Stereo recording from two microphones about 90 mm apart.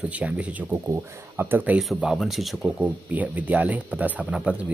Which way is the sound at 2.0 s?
5° right (ahead or behind).